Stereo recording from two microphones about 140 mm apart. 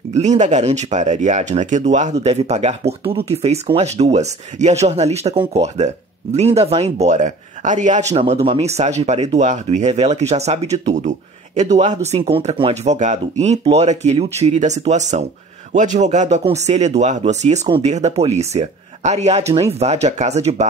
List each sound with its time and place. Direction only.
0.4 s speech: 55° right (ahead or behind)